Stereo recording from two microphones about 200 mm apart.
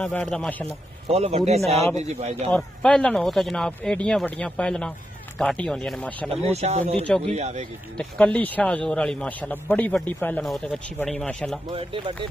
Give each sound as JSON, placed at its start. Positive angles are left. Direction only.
{"t": 0.0, "sound": "a man's voice", "side_deg": 5}
{"t": 0.7, "sound": "speech", "side_deg": -30}
{"t": 1.8, "sound": "a man's voice", "side_deg": 15}
{"t": 2.0, "sound": "speech", "side_deg": -30}
{"t": 2.5, "sound": "a man's voice", "side_deg": 5}
{"t": 6.5, "sound": "speech", "side_deg": -30}
{"t": 8.0, "sound": "a man's voice", "side_deg": 5}
{"t": 11.7, "sound": "speech", "side_deg": -25}